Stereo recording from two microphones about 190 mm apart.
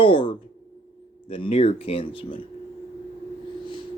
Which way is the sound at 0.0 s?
25° left (ahead or behind).